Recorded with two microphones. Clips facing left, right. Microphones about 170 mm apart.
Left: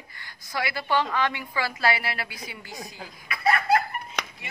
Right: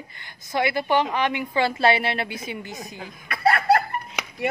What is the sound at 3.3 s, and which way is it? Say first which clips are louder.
Laughter: right 3 dB; 65° right (ahead or behind).